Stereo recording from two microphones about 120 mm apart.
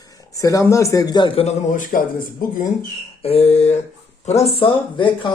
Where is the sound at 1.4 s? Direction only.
65° left (ahead or behind).